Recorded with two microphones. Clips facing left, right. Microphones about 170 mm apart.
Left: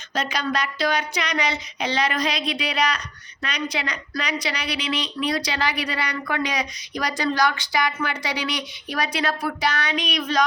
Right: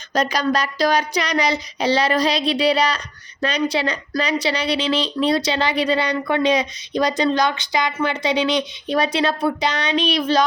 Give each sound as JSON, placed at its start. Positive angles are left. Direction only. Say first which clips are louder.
{"t": 0.1, "sound": "child singing", "louder": "right 6 dB", "side_deg": -40}
{"t": 3.4, "sound": "a woman's voice", "louder": "right 8 dB", "side_deg": -30}